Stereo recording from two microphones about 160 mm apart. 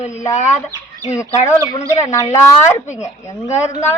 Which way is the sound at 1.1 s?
20° left (ahead or behind).